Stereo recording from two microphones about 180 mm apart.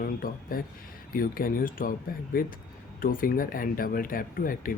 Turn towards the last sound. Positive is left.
turn(degrees=50)  # may be behind; listen again after turning